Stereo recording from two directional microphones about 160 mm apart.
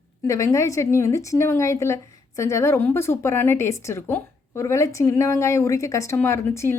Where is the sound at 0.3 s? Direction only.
20° left (ahead or behind).